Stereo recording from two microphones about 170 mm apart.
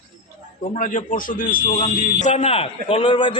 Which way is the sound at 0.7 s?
50° left (ahead or behind).